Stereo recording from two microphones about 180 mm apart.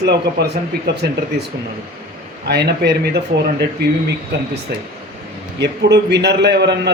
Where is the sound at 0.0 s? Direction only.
65° right (ahead or behind).